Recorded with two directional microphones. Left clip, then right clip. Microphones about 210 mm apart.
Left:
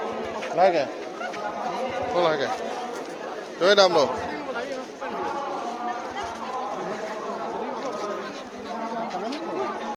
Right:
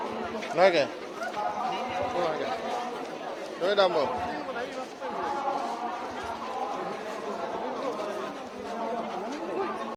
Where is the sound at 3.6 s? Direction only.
25° left (ahead or behind).